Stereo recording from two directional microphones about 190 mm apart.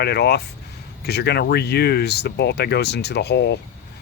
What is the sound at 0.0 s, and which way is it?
Speech, 60° left (ahead or behind).